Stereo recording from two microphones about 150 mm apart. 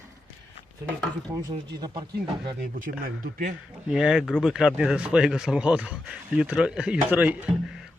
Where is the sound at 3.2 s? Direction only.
60° right (ahead or behind).